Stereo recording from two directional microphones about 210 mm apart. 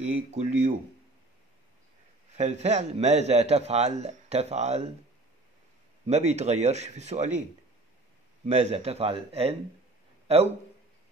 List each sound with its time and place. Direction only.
0.0 s a man's voice: 30° right (ahead or behind)
2.3 s a man's voice: 35° right (ahead or behind)
6.0 s a man's voice: 30° right (ahead or behind)
8.5 s a man's voice: 30° right (ahead or behind)